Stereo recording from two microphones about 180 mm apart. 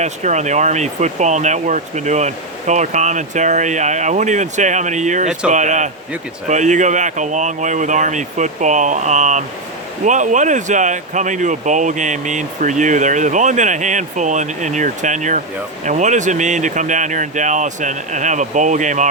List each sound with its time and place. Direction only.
0.0 s speech: 40° right (ahead or behind)